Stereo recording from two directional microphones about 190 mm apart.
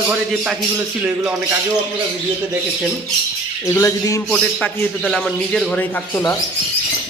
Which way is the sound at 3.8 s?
20° left (ahead or behind).